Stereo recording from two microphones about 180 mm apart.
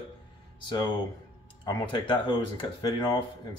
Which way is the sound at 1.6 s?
25° left (ahead or behind).